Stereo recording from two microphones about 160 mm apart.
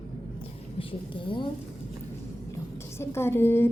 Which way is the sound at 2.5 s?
15° left (ahead or behind).